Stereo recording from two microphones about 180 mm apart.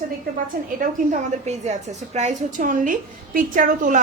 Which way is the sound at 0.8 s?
45° right (ahead or behind).